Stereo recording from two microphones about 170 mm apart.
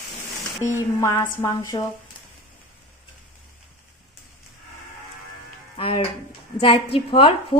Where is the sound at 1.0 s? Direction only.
15° left (ahead or behind).